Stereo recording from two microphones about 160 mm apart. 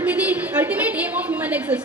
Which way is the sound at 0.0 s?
10° right (ahead or behind).